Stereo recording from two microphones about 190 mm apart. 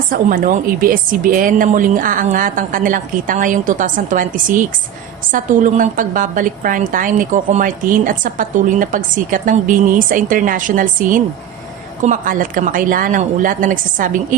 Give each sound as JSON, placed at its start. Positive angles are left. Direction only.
{"t": 0.1, "sound": "a woman's voice", "side_deg": -45}